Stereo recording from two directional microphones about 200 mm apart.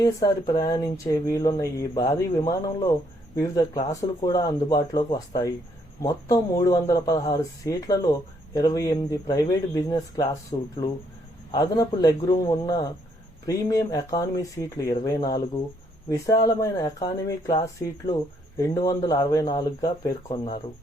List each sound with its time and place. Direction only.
0.0 s a man's voice: 20° left (ahead or behind)